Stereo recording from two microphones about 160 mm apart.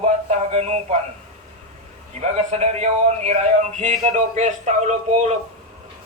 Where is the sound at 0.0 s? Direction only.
45° right (ahead or behind).